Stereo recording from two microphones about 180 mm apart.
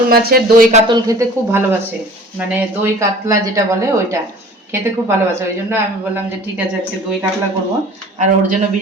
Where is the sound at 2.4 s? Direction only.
10° right (ahead or behind).